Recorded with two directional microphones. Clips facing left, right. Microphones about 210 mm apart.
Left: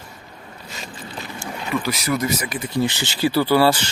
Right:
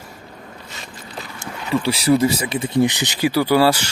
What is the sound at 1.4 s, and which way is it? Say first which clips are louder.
Speech: right 3 dB; 30° right (ahead or behind).